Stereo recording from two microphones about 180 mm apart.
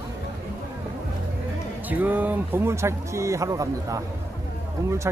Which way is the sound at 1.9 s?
10° right (ahead or behind).